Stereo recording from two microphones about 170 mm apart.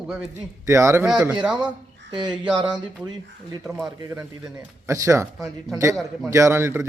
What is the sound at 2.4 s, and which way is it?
Speech, 5° right (ahead or behind).